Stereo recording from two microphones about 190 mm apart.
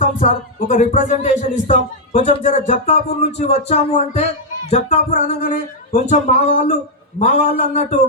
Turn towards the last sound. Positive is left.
turn(degrees=35)  # may be behind; listen again after turning